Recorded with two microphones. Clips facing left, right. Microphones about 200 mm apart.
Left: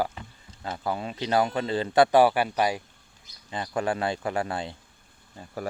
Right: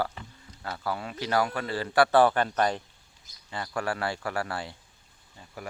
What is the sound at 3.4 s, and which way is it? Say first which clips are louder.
Speech: left 4 dB; 20° left (ahead or behind).